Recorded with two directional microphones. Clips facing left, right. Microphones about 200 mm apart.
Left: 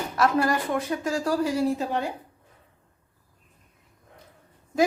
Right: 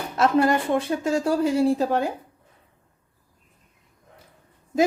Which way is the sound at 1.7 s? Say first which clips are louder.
Right 5 dB; 45° right (ahead or behind).